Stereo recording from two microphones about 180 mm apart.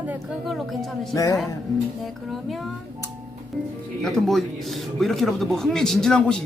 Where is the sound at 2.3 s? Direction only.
Centre (ahead or behind).